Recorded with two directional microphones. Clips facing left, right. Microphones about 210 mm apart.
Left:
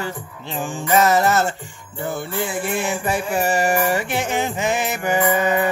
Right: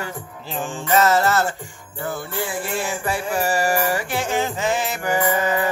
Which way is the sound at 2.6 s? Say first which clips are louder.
Left 3 dB; 20° left (ahead or behind).